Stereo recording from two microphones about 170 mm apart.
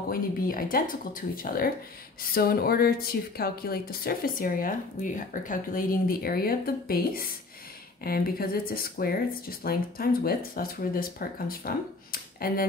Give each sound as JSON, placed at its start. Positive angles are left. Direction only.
{"t": 0.1, "sound": "a woman's voice", "side_deg": 55}